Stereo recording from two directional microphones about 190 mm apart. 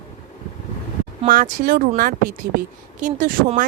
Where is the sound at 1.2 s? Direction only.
45° right (ahead or behind).